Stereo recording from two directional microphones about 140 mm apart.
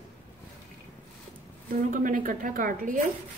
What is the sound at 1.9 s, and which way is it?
A woman's voice, 70° right (ahead or behind).